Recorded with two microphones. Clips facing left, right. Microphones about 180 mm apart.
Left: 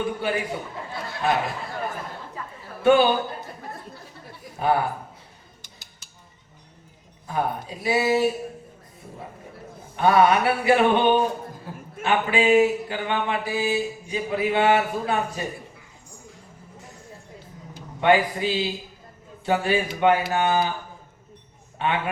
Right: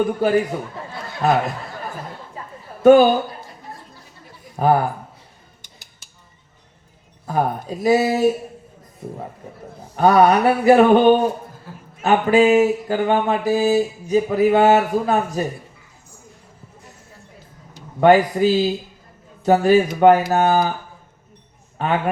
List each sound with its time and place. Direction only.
0.0 s speech: 40° right (ahead or behind)
2.8 s a man's voice: 40° right (ahead or behind)
4.5 s a man's voice: 40° right (ahead or behind)
7.3 s speech: 40° right (ahead or behind)
9.9 s speech: 40° right (ahead or behind)
11.7 s a man's voice: 15° left (ahead or behind)
12.0 s speech: 40° right (ahead or behind)
18.0 s speech: 40° right (ahead or behind)
21.8 s speech: 40° right (ahead or behind)